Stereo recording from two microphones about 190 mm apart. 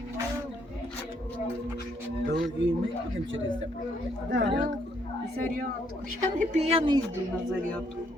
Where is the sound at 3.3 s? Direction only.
90° right.